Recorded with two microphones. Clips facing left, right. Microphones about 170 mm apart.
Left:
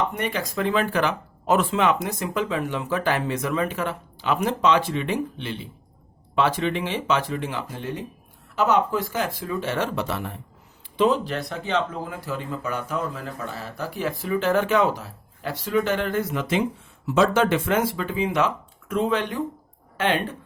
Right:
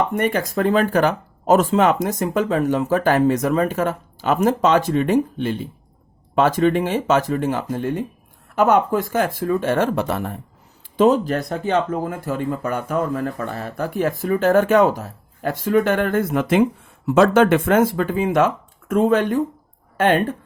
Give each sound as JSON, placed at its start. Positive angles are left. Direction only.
{"t": 0.1, "sound": "speech", "side_deg": -50}